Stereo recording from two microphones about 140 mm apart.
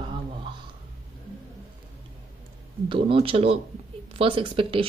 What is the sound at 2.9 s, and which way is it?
Speech, 40° right (ahead or behind).